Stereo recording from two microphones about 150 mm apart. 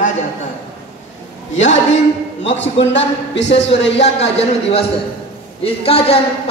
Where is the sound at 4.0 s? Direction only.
45° left (ahead or behind).